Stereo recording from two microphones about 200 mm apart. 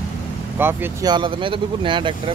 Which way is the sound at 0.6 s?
10° right (ahead or behind).